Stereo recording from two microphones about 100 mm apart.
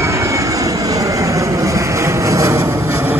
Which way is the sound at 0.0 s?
30° right (ahead or behind).